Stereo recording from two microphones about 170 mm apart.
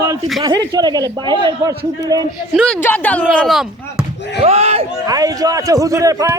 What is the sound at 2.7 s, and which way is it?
Speech, 10° left (ahead or behind).